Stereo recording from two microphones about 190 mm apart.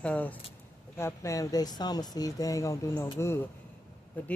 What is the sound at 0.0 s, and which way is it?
Speech, 10° left (ahead or behind).